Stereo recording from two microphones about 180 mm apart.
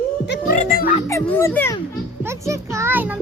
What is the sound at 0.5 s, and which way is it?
Speech, 45° left (ahead or behind).